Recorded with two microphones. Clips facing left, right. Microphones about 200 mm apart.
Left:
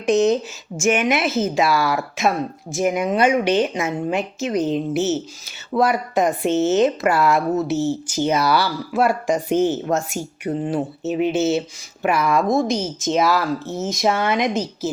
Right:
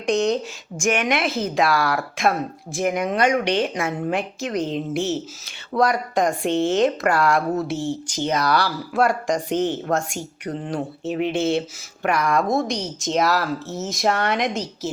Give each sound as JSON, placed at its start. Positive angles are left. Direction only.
{"t": 0.0, "sound": "speech", "side_deg": 5}